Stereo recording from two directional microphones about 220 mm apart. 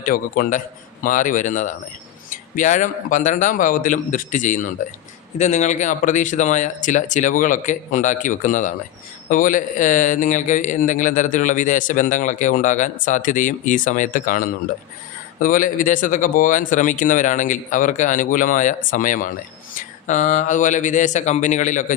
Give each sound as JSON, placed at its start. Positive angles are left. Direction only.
{"t": 0.0, "sound": "a man's voice", "side_deg": 40}